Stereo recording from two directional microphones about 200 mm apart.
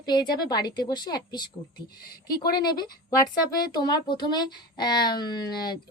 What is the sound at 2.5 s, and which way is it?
A woman's voice, 20° left (ahead or behind).